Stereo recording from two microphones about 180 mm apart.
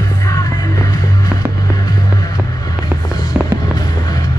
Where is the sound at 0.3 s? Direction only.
20° left (ahead or behind).